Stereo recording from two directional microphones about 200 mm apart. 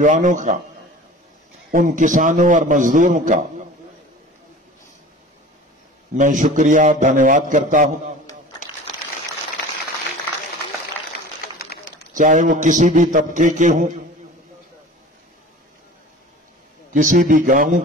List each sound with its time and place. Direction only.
0.0 s a man's voice: 40° right (ahead or behind)
1.7 s a man's voice: 40° right (ahead or behind)
6.1 s a man's voice: 40° right (ahead or behind)
11.5 s bird: 50° left (ahead or behind)
12.1 s a man's voice: 40° right (ahead or behind)
16.9 s a man's voice: 40° right (ahead or behind)